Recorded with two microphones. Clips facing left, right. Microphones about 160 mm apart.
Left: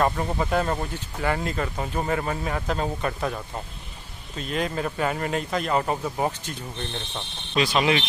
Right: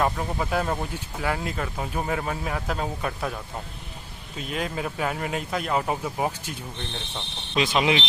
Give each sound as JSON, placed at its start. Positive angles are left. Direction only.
{"t": 0.0, "sound": "speech", "side_deg": 0}
{"t": 4.4, "sound": "speech", "side_deg": -5}
{"t": 7.5, "sound": "speech", "side_deg": -20}